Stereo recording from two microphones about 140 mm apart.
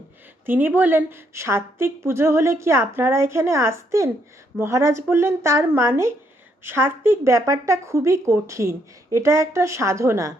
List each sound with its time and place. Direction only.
0.4 s a woman's voice: 15° right (ahead or behind)